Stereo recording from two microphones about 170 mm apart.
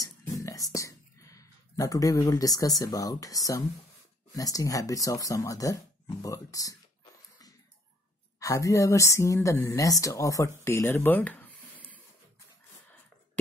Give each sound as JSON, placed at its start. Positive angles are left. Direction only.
{"t": 0.0, "sound": "whispering", "side_deg": 15}
{"t": 0.7, "sound": "speech", "side_deg": 20}
{"t": 8.4, "sound": "speech", "side_deg": 20}
{"t": 10.6, "sound": "a sound", "side_deg": 15}